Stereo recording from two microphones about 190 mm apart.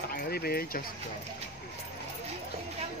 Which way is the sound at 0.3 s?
55° left (ahead or behind).